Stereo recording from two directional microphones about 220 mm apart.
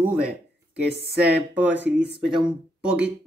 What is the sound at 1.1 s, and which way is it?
Speech, 5° right (ahead or behind).